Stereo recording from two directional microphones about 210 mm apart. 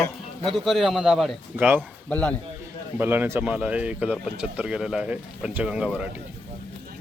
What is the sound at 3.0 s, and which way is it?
Speech, 10° right (ahead or behind).